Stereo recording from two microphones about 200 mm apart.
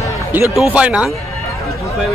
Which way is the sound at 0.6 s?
5° right (ahead or behind).